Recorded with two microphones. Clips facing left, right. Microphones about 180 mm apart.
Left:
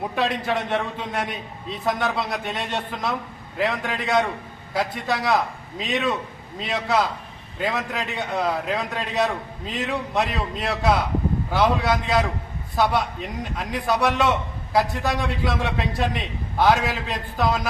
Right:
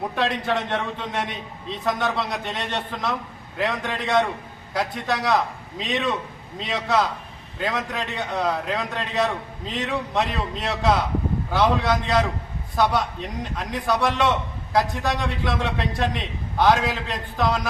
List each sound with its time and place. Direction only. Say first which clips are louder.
0.2 s a man's voice: even; 5° left (ahead or behind)